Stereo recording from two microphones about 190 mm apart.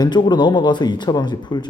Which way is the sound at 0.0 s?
25° left (ahead or behind).